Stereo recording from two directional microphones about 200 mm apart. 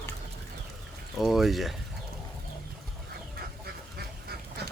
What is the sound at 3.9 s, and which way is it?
Duck, 50° right (ahead or behind).